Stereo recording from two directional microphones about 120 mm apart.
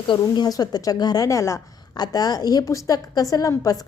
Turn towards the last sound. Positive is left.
turn(degrees=30)  # may be behind; listen again after turning